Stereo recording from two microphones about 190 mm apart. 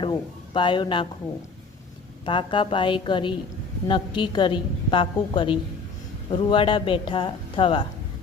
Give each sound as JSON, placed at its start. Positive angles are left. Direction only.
{"t": 0.0, "sound": "speech", "side_deg": 25}
{"t": 2.2, "sound": "a woman's voice", "side_deg": 25}